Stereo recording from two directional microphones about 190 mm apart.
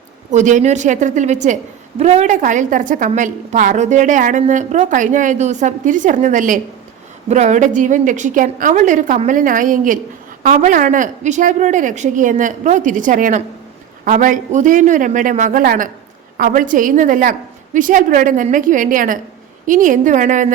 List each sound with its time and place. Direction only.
0.3 s a woman's voice: 40° right (ahead or behind)